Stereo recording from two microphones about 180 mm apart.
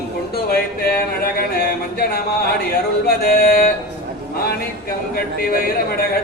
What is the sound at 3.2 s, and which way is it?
Music, 55° left (ahead or behind).